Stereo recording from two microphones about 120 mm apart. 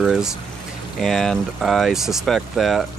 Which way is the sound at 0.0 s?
Centre (ahead or behind).